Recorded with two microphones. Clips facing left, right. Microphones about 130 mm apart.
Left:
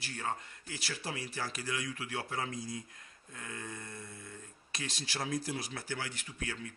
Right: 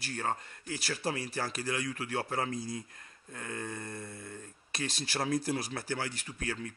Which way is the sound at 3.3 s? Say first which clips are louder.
Right 5 dB; 50° right (ahead or behind).